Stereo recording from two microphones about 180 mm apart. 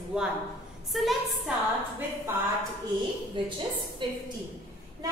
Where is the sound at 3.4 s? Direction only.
30° right (ahead or behind).